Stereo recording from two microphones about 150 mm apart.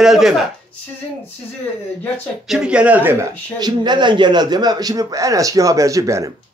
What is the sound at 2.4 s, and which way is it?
Speech, 5° right (ahead or behind).